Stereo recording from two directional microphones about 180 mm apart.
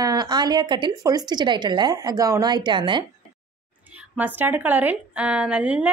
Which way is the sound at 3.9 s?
10° right (ahead or behind).